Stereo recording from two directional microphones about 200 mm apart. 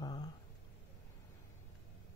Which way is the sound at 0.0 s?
20° left (ahead or behind).